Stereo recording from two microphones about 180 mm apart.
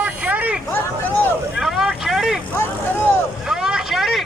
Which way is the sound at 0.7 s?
10° left (ahead or behind).